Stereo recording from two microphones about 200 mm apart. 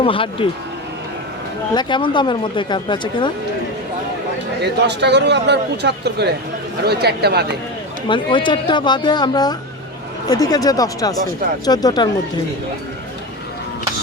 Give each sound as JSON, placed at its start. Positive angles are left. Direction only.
{"t": 0.0, "sound": "speech", "side_deg": 25}
{"t": 1.7, "sound": "speech", "side_deg": 20}
{"t": 4.6, "sound": "a man's voice", "side_deg": -60}
{"t": 8.0, "sound": "speech", "side_deg": 25}